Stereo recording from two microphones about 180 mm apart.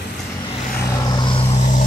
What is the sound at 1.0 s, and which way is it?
Vehicle, 25° left (ahead or behind).